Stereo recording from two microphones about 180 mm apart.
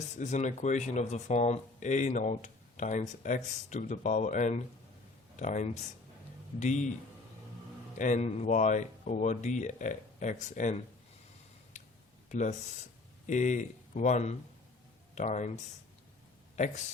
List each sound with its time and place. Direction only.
0.2 s speech: 40° left (ahead or behind)
7.9 s speech: 45° left (ahead or behind)
12.3 s speech: 40° left (ahead or behind)